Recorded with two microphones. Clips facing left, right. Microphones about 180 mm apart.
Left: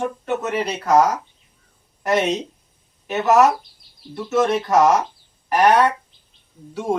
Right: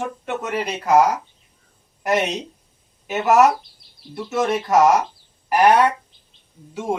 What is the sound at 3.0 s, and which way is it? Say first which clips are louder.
A woman's voice: even; 5° right (ahead or behind).